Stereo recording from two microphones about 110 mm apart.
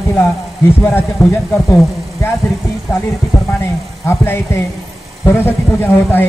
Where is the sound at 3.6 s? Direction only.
20° left (ahead or behind).